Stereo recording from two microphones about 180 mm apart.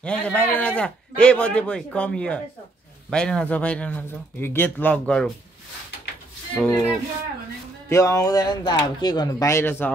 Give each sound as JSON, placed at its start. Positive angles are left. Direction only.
{"t": 0.0, "sound": "a man's voice", "side_deg": 5}
{"t": 6.5, "sound": "a man's voice", "side_deg": 5}
{"t": 7.9, "sound": "speech", "side_deg": 15}